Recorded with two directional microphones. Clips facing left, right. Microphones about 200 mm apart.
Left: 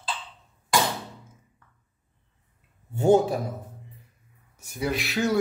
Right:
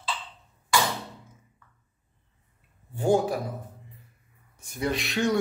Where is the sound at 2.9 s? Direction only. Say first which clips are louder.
Left 4 dB; 25° left (ahead or behind).